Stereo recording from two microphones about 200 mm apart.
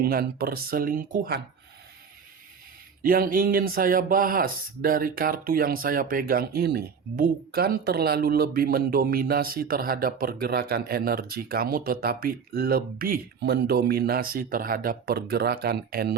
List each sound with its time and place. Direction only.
0.0 s speech: 50° right (ahead or behind)
3.0 s speech: 45° right (ahead or behind)